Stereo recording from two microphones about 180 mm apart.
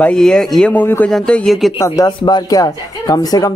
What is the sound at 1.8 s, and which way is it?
Speech, 20° left (ahead or behind).